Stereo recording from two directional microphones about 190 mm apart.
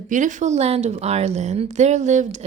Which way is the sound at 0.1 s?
40° right (ahead or behind).